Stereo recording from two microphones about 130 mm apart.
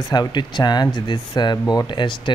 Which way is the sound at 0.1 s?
35° left (ahead or behind).